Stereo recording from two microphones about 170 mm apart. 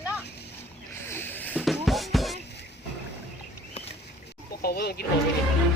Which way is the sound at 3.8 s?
35° left (ahead or behind).